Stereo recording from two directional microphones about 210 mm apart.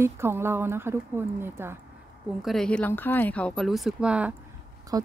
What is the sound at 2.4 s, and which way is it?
Speech, centre (ahead or behind).